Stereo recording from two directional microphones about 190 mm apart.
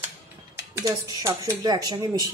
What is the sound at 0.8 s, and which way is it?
Speech, 20° right (ahead or behind).